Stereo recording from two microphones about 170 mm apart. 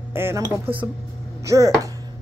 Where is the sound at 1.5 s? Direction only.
20° right (ahead or behind).